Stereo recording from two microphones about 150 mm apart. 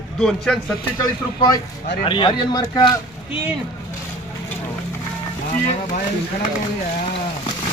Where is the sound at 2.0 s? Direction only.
35° left (ahead or behind).